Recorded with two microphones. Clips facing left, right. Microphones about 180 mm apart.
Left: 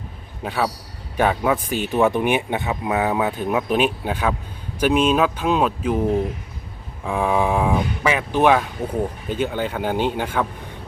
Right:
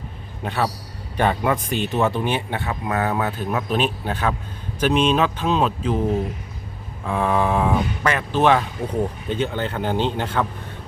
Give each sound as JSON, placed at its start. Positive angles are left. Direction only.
{"t": 0.4, "sound": "speech", "side_deg": 5}
{"t": 7.0, "sound": "speech", "side_deg": 10}